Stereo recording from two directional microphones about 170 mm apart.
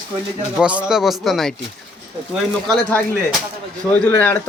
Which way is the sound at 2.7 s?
10° left (ahead or behind).